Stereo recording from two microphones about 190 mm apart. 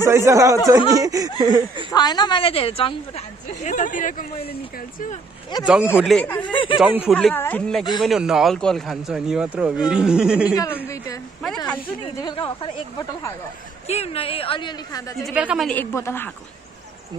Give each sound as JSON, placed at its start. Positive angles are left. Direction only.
{"t": 0.0, "sound": "speech", "side_deg": -15}
{"t": 1.9, "sound": "a woman's voice", "side_deg": 20}
{"t": 5.9, "sound": "speech", "side_deg": 0}
{"t": 6.4, "sound": "a woman's voice", "side_deg": 25}
{"t": 6.8, "sound": "speech", "side_deg": -5}
{"t": 7.2, "sound": "speech", "side_deg": 5}
{"t": 10.5, "sound": "speech", "side_deg": 15}
{"t": 11.4, "sound": "speech", "side_deg": 5}
{"t": 12.0, "sound": "a woman's voice", "side_deg": 25}
{"t": 15.2, "sound": "speech", "side_deg": -5}
{"t": 15.7, "sound": "speech", "side_deg": 10}